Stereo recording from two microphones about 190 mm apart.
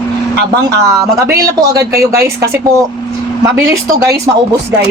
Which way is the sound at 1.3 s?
15° right (ahead or behind).